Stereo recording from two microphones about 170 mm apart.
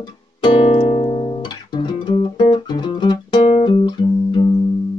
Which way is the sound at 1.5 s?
25° left (ahead or behind).